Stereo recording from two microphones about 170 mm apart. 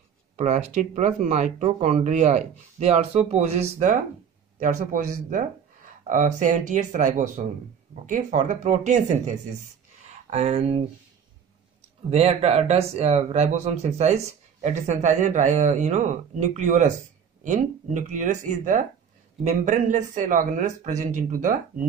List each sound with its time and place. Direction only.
0.4 s speech: 45° right (ahead or behind)
12.1 s speech: 40° right (ahead or behind)